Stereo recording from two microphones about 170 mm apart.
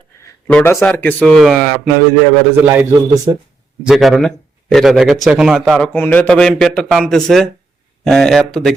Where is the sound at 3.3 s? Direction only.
25° right (ahead or behind).